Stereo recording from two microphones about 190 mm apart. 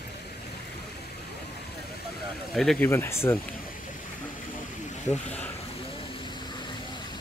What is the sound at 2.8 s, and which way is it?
Speech, 15° left (ahead or behind).